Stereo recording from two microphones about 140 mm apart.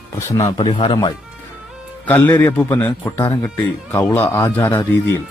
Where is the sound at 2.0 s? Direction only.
10° left (ahead or behind).